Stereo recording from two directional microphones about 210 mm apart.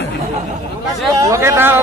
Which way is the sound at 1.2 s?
15° right (ahead or behind).